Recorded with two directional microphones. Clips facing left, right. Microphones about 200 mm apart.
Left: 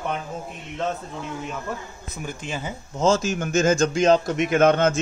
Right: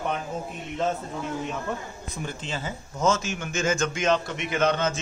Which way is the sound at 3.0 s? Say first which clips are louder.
Left 4 dB; 35° left (ahead or behind).